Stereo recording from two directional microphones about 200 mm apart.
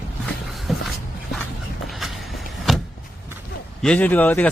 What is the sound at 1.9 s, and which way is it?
Vehicle, centre (ahead or behind).